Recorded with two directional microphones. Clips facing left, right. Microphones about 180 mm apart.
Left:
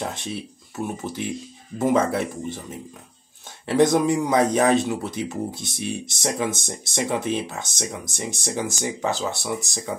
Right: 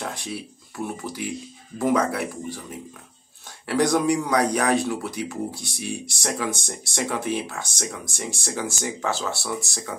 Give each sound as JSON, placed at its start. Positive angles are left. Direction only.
{"t": 0.0, "sound": "speech", "side_deg": 20}
{"t": 3.6, "sound": "speech", "side_deg": 20}